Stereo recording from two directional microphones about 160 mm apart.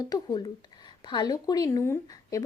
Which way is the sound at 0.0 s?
25° left (ahead or behind).